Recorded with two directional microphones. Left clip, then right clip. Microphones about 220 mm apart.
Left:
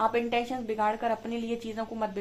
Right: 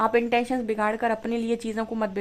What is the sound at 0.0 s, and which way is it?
A woman's voice, 45° right (ahead or behind).